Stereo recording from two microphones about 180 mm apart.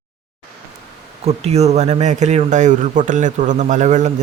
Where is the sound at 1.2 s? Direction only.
35° right (ahead or behind).